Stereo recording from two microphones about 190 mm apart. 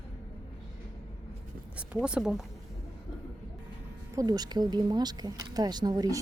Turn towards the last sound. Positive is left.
turn(degrees=-20)  # may be behind; listen again after turning